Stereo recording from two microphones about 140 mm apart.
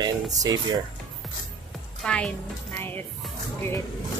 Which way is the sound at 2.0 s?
10° left (ahead or behind).